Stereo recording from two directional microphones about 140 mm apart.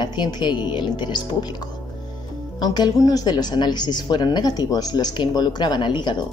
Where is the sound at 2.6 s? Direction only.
30° left (ahead or behind).